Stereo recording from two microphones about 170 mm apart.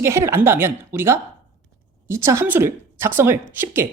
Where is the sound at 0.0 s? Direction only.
15° right (ahead or behind).